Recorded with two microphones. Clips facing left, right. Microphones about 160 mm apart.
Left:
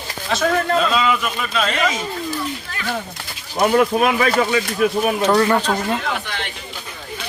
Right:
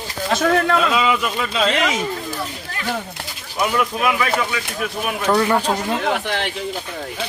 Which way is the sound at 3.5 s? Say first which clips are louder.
Left 5 dB; 45° left (ahead or behind).